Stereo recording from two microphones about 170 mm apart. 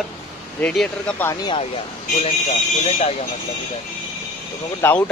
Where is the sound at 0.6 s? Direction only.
5° left (ahead or behind).